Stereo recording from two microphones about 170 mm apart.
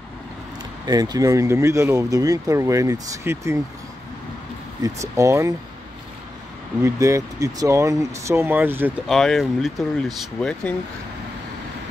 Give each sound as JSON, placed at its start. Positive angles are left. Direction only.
{"t": 0.8, "sound": "speech", "side_deg": -25}
{"t": 4.8, "sound": "speech", "side_deg": -20}
{"t": 6.8, "sound": "speech", "side_deg": -15}
{"t": 9.0, "sound": "speech", "side_deg": 0}